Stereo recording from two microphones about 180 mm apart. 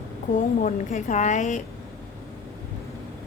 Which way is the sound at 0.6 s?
45° left (ahead or behind).